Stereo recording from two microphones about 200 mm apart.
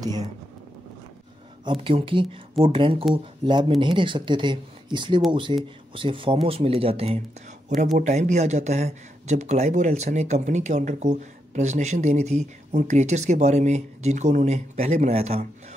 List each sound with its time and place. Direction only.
1.6 s speech: 25° right (ahead or behind)